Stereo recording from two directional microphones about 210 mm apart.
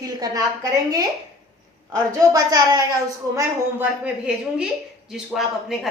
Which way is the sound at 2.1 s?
15° right (ahead or behind).